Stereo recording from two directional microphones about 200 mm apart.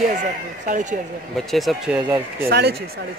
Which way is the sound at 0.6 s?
40° right (ahead or behind).